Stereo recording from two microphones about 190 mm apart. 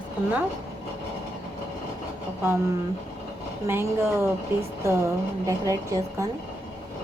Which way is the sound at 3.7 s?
15° right (ahead or behind).